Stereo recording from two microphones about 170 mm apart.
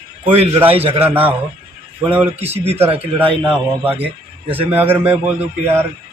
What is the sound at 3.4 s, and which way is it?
A man's voice, 10° right (ahead or behind).